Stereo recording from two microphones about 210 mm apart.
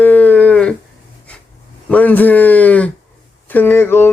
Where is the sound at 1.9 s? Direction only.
10° left (ahead or behind).